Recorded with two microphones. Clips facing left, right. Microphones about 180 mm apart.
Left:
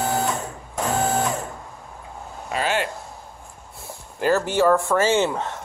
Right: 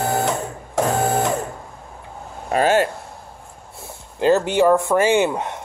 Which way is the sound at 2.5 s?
45° right (ahead or behind).